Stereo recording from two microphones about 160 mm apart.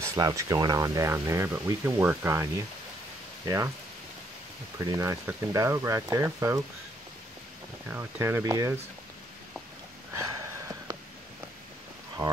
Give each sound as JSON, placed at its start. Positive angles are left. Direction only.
{"t": 0.1, "sound": "speech", "side_deg": -20}
{"t": 3.4, "sound": "speech", "side_deg": -20}
{"t": 4.7, "sound": "speech", "side_deg": -20}
{"t": 7.9, "sound": "speech", "side_deg": -15}
{"t": 10.3, "sound": "a sound", "side_deg": -20}
{"t": 12.2, "sound": "speech", "side_deg": -30}